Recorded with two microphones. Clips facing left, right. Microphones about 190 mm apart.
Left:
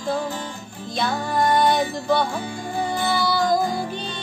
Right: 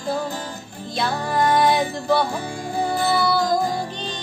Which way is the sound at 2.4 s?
40° right (ahead or behind).